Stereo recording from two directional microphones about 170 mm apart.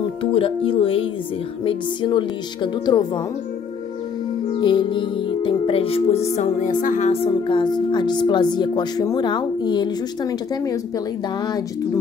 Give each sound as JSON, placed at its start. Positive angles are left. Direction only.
{"t": 0.2, "sound": "speech", "side_deg": 30}
{"t": 4.6, "sound": "music", "side_deg": 25}
{"t": 7.4, "sound": "speech", "side_deg": 25}